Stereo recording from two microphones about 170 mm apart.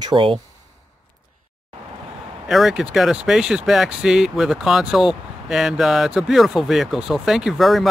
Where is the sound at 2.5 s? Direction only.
Centre (ahead or behind).